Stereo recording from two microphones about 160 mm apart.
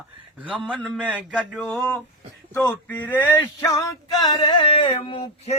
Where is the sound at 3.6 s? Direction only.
20° left (ahead or behind).